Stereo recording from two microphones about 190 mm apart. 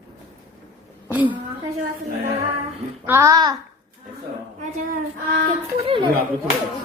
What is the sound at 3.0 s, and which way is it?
Speech, 15° right (ahead or behind).